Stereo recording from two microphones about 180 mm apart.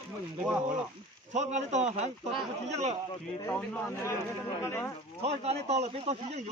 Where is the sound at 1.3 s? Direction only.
40° right (ahead or behind).